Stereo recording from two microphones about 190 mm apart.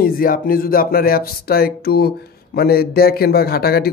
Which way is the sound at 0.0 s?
50° left (ahead or behind).